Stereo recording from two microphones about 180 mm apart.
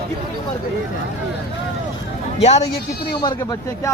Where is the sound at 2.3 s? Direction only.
35° left (ahead or behind).